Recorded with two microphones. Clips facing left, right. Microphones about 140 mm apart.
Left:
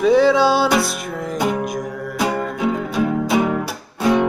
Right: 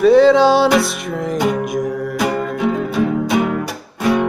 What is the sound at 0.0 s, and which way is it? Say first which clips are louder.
Music: right 4 dB; 10° left (ahead or behind).